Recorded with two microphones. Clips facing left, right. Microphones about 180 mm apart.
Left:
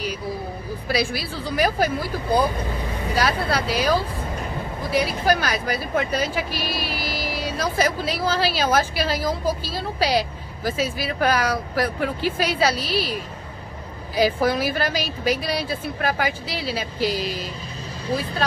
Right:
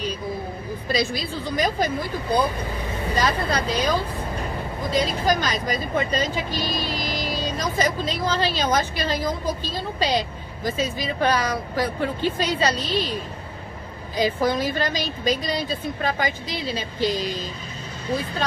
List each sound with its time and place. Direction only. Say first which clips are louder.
0.8 s speech: even; 10° left (ahead or behind)